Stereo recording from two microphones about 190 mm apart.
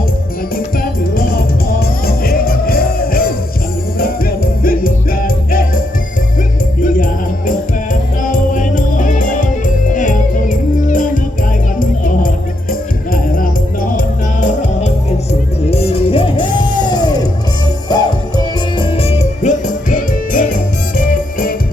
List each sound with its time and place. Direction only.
0.5 s music: 50° left (ahead or behind)
6.8 s music: 45° left (ahead or behind)